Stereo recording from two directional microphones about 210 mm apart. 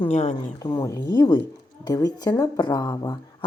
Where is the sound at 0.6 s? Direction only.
20° left (ahead or behind).